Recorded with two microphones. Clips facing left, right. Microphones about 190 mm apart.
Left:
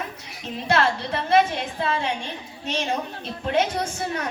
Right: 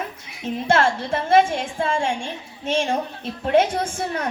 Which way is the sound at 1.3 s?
50° right (ahead or behind).